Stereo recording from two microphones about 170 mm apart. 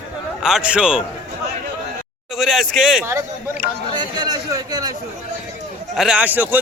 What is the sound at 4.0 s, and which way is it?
Speech, 25° right (ahead or behind).